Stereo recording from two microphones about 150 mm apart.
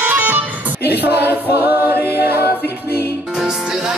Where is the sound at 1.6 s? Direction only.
15° right (ahead or behind).